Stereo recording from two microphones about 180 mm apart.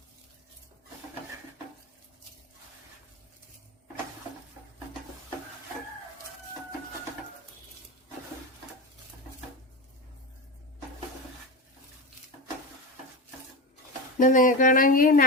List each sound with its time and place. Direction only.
14.2 s speech: 45° left (ahead or behind)